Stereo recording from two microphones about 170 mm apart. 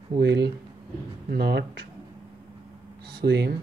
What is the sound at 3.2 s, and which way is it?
Speech, 75° right (ahead or behind).